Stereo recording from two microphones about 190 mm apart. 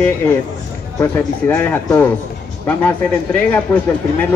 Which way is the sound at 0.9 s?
10° left (ahead or behind).